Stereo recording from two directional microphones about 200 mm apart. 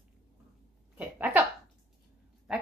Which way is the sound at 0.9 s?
10° right (ahead or behind).